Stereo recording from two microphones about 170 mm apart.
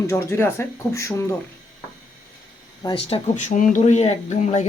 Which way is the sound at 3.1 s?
40° left (ahead or behind).